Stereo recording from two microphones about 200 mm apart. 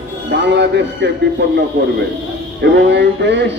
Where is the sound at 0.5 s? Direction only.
60° right (ahead or behind).